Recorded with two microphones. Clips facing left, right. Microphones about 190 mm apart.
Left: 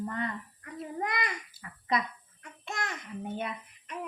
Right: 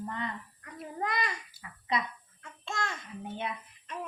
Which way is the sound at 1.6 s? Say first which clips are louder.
Left 2 dB; 45° left (ahead or behind).